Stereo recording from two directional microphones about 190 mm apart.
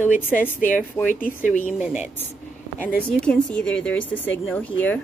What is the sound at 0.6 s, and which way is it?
Speech, 45° left (ahead or behind).